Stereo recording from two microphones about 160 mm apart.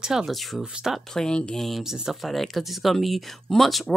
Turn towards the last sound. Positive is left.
turn(degrees=0)  # may be behind; listen again after turning